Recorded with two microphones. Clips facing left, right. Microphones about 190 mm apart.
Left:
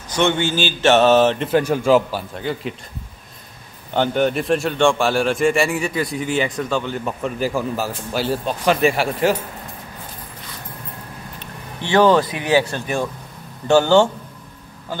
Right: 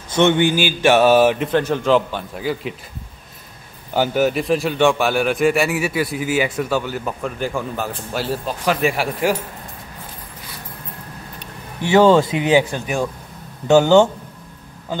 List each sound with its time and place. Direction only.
0.1 s speech: 20° right (ahead or behind)
1.5 s a man's voice: 10° left (ahead or behind)
3.9 s a man's voice: 5° right (ahead or behind)
11.8 s speech: 10° right (ahead or behind)